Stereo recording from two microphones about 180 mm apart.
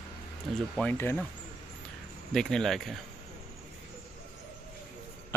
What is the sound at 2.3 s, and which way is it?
Speech, centre (ahead or behind).